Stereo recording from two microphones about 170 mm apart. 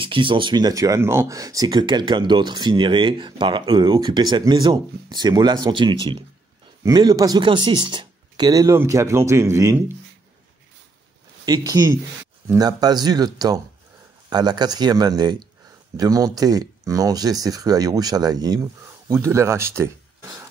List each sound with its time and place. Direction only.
0.0 s speech: 30° right (ahead or behind); by 9.9 s 15° right (ahead or behind)
11.4 s speech: 20° right (ahead or behind)